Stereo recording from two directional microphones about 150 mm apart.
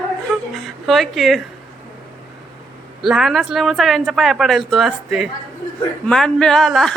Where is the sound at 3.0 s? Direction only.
Centre (ahead or behind).